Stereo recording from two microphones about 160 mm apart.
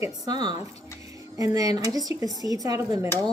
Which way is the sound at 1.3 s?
20° right (ahead or behind).